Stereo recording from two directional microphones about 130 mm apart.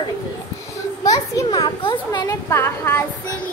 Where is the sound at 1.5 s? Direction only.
35° left (ahead or behind).